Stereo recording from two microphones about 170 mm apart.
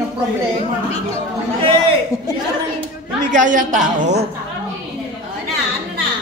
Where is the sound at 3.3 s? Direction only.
50° right (ahead or behind).